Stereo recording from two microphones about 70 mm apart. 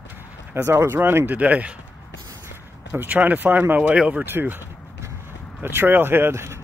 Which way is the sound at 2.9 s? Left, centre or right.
Right.